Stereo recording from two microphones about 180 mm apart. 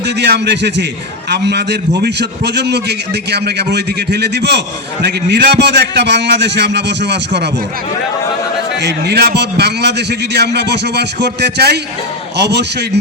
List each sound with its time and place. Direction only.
0.2 s a man's voice: 70° right (ahead or behind)
8.8 s a man's voice: 65° right (ahead or behind)